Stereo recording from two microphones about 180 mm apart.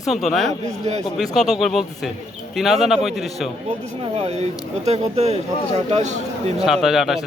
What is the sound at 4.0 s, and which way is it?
A man's voice, 35° right (ahead or behind).